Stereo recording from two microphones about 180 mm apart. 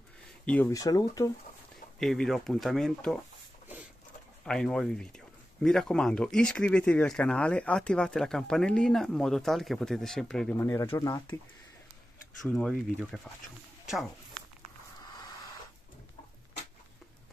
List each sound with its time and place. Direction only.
0.5 s speech: 15° left (ahead or behind)
2.0 s speech: centre (ahead or behind)
4.5 s speech: 5° left (ahead or behind)
10.6 s speech: 15° left (ahead or behind)
12.4 s speech: centre (ahead or behind)
15.0 s a sound: 20° left (ahead or behind)